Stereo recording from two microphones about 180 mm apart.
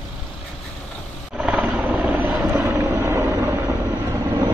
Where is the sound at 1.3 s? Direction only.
5° right (ahead or behind).